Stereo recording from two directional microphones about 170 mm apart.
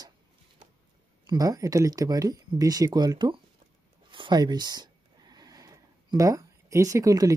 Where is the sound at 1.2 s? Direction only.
20° right (ahead or behind).